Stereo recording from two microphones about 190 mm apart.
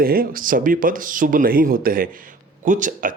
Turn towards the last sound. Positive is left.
turn(degrees=-45)  # may be behind; listen again after turning